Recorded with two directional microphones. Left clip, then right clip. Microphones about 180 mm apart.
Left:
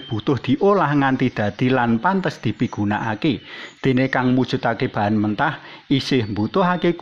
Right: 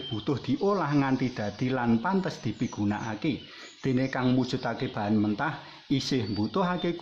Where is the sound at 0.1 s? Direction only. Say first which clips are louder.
Left 10 dB; 25° left (ahead or behind).